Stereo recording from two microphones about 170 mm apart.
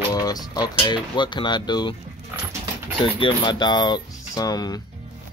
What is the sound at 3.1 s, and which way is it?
Speech, 30° left (ahead or behind).